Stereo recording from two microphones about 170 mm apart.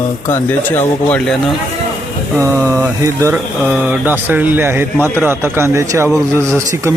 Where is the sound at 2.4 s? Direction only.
15° right (ahead or behind).